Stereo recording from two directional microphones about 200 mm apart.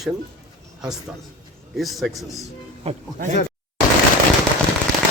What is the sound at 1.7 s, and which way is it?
Speech, centre (ahead or behind).